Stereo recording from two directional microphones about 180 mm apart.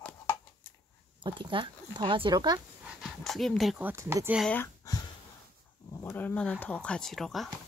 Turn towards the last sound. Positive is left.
turn(degrees=0)  # may be behind; listen again after turning